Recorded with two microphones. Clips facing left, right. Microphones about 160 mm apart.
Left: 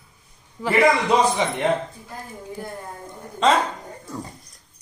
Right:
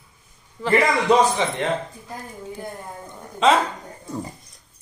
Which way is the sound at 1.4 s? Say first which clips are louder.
Even; 15° left (ahead or behind).